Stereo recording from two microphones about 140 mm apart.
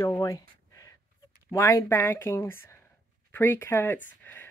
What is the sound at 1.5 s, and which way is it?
Speech, 25° left (ahead or behind).